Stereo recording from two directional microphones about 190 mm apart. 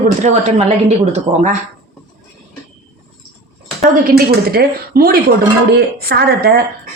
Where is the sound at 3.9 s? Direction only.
50° right (ahead or behind).